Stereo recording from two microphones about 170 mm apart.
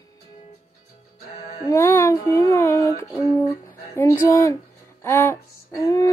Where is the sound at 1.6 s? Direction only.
15° left (ahead or behind).